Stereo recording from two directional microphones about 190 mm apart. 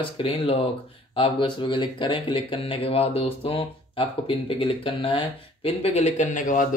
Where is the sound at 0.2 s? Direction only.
30° left (ahead or behind).